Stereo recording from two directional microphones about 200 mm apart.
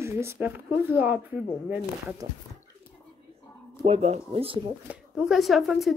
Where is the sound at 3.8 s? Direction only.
30° right (ahead or behind).